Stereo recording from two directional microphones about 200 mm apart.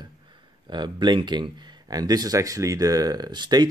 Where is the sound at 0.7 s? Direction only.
20° right (ahead or behind).